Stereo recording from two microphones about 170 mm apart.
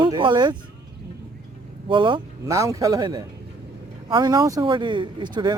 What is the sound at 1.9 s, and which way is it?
Speech, 30° right (ahead or behind).